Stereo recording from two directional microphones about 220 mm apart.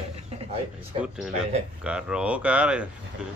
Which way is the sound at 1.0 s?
5° right (ahead or behind).